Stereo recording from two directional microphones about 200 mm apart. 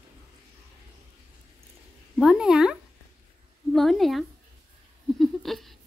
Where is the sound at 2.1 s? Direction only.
5° right (ahead or behind).